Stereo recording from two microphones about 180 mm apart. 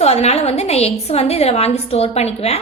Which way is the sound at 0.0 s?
35° left (ahead or behind).